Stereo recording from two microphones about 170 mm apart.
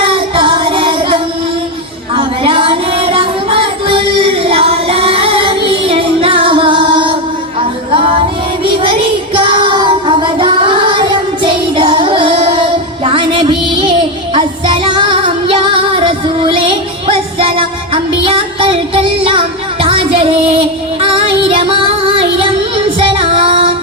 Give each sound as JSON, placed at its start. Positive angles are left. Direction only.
{"t": 0.0, "sound": "music", "side_deg": -30}
{"t": 8.6, "sound": "child singing", "side_deg": -30}
{"t": 13.1, "sound": "music", "side_deg": -30}